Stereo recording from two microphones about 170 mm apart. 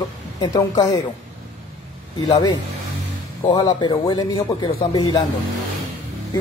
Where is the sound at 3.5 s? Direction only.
25° left (ahead or behind).